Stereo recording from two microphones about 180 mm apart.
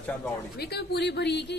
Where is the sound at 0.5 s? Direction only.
65° left (ahead or behind).